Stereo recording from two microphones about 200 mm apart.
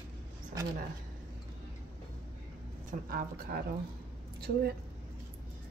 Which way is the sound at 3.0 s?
45° right (ahead or behind).